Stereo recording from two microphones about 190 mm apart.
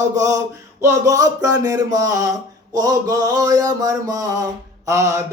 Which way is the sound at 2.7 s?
20° right (ahead or behind).